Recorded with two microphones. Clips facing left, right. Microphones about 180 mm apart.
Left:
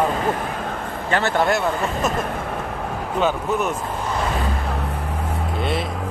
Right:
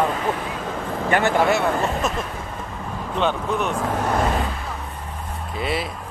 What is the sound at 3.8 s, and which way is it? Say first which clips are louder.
Speech: right 4 dB; 75° right (ahead or behind).